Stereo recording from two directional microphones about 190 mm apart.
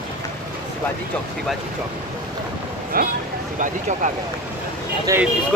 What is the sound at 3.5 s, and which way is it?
Speech, 40° right (ahead or behind).